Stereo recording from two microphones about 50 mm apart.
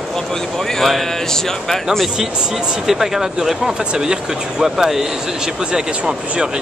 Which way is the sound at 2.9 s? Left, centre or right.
Centre.